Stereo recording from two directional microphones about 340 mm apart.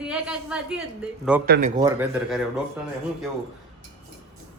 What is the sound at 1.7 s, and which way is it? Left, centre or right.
Speech, centre.